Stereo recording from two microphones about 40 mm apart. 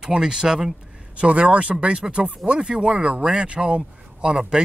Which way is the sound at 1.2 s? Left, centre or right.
Right.